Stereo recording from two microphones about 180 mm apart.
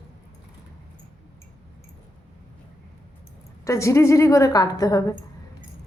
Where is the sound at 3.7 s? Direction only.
15° left (ahead or behind).